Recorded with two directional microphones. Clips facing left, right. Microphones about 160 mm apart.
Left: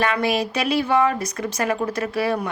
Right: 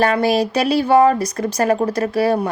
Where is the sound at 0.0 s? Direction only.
35° right (ahead or behind).